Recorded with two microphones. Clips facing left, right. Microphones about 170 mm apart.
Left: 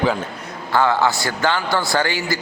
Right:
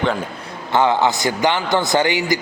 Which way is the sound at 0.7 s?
20° right (ahead or behind).